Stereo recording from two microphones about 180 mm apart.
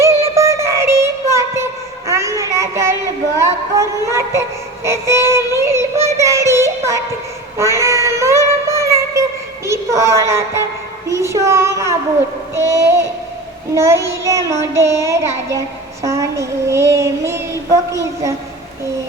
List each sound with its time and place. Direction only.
0.0 s music: 15° right (ahead or behind)
2.0 s a sound: 15° right (ahead or behind)
3.4 s music: 15° right (ahead or behind)
5.5 s child singing: 15° right (ahead or behind)
8.6 s music: 15° right (ahead or behind)
11.1 s a sound: 15° right (ahead or behind)
13.7 s music: 15° right (ahead or behind)
16.0 s child singing: 15° right (ahead or behind)